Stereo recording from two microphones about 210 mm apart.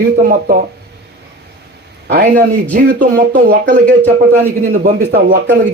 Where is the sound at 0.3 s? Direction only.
45° right (ahead or behind).